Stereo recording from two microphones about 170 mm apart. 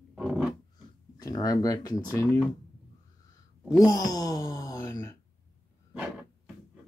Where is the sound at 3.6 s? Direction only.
20° left (ahead or behind).